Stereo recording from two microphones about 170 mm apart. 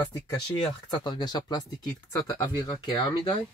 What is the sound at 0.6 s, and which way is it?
Speech, 25° left (ahead or behind).